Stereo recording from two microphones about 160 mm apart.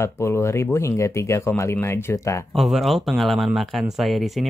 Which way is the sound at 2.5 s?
Centre (ahead or behind).